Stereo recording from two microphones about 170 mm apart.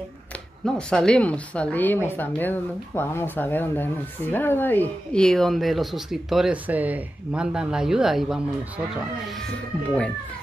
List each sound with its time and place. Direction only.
0.7 s speech: 5° left (ahead or behind)